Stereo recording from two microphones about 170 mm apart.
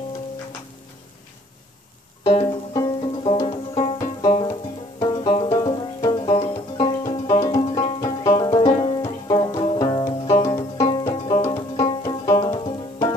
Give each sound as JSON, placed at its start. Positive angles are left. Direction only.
{"t": 2.2, "sound": "music", "side_deg": 20}
{"t": 10.0, "sound": "music", "side_deg": 20}